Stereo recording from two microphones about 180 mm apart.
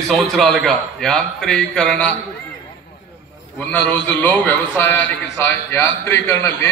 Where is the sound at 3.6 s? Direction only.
10° left (ahead or behind).